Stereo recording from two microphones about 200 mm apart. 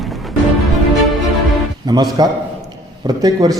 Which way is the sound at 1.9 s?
20° right (ahead or behind).